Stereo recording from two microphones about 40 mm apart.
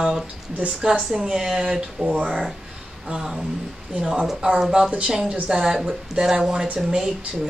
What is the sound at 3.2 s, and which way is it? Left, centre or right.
Speech, centre.